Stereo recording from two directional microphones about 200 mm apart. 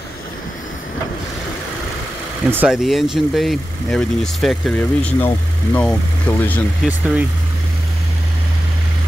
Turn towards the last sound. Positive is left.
turn(degrees=-5)  # may be behind; listen again after turning